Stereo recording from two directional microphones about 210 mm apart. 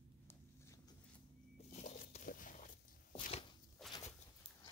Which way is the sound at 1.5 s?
35° left (ahead or behind).